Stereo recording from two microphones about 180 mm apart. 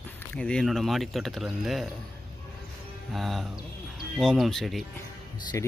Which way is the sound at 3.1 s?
Centre (ahead or behind).